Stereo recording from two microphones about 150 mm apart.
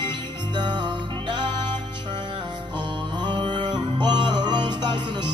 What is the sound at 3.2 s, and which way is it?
Music, 30° right (ahead or behind).